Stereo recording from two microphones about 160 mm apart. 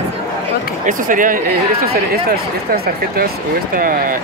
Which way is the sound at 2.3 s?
70° right (ahead or behind).